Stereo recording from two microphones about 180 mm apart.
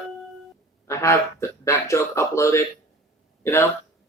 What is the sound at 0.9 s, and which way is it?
Speech, 15° left (ahead or behind).